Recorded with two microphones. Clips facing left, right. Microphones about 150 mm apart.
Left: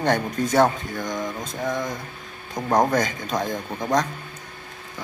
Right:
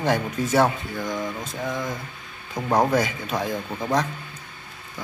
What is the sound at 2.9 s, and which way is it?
Speech, 5° right (ahead or behind).